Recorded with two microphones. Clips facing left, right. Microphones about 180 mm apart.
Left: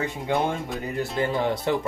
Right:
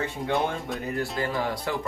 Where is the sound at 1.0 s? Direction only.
20° left (ahead or behind).